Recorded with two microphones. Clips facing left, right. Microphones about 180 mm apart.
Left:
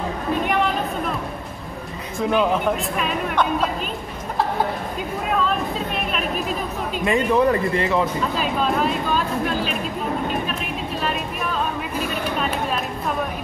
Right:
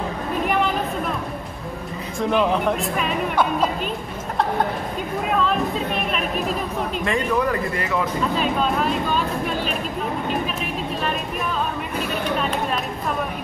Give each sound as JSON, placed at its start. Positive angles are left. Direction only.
{"t": 2.1, "sound": "speech", "side_deg": 0}
{"t": 7.1, "sound": "speech", "side_deg": 25}
{"t": 8.4, "sound": "speech", "side_deg": 0}